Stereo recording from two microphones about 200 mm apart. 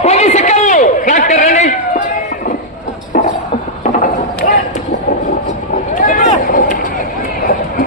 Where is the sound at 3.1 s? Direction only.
40° left (ahead or behind).